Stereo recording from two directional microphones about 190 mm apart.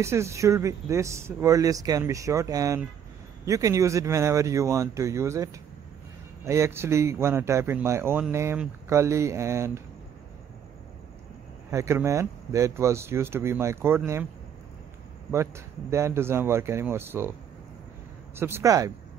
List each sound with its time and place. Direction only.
0.0 s speech: 15° right (ahead or behind)
11.7 s speech: 15° right (ahead or behind)
15.3 s speech: 15° right (ahead or behind)